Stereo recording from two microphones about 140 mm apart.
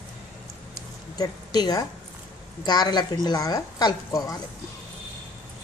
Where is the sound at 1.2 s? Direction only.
25° left (ahead or behind).